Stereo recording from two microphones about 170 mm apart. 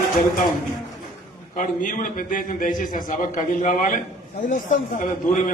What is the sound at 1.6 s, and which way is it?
A man's voice, 50° left (ahead or behind).